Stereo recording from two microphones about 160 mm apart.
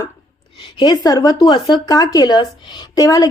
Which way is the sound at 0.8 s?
25° left (ahead or behind).